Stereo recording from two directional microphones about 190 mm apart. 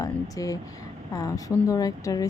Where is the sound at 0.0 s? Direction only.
20° left (ahead or behind).